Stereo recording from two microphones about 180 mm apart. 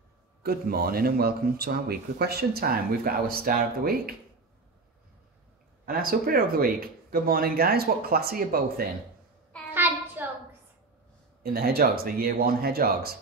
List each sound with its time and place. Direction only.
0.4 s speech: 60° right (ahead or behind)
5.9 s speech: 55° right (ahead or behind)
9.8 s a sound: 10° right (ahead or behind)
11.5 s speech: 55° right (ahead or behind)